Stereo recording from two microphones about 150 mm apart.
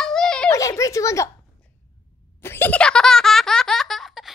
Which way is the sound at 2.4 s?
15° left (ahead or behind).